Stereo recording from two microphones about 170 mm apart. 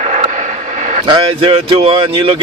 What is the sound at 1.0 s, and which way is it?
Speech, 30° right (ahead or behind).